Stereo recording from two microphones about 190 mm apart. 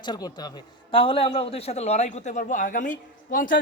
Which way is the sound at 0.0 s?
20° left (ahead or behind).